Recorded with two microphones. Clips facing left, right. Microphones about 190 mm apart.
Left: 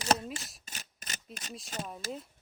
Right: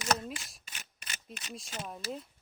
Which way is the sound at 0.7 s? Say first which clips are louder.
Left 2 dB; 40° left (ahead or behind).